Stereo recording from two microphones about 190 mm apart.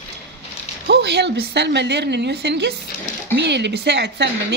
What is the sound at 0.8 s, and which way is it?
Speech, 65° right (ahead or behind).